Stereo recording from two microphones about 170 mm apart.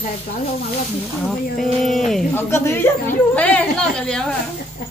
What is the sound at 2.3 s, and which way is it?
Speech, 15° left (ahead or behind).